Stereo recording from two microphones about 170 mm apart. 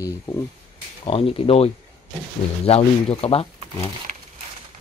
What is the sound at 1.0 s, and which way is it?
Speech, 35° left (ahead or behind).